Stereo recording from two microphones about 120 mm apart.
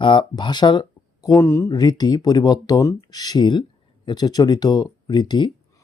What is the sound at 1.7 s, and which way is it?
Speech, 35° left (ahead or behind).